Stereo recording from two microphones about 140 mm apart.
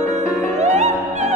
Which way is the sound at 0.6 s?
55° right (ahead or behind).